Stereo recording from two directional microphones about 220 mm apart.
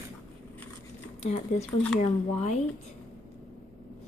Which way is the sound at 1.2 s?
30° left (ahead or behind).